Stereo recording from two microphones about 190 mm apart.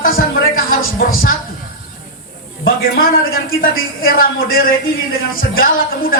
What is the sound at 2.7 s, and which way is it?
Speech, 50° left (ahead or behind).